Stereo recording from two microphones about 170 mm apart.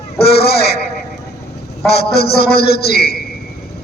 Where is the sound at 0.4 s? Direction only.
70° left (ahead or behind).